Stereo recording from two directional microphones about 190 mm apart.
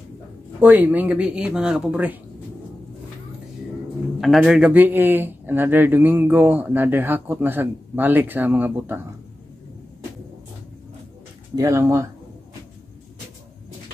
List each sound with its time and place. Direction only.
0.6 s speech: 10° right (ahead or behind)
4.2 s a man's voice: centre (ahead or behind)
11.5 s a man's voice: 15° right (ahead or behind)